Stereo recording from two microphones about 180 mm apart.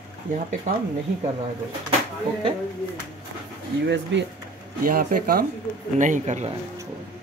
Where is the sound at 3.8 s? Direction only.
75° right (ahead or behind).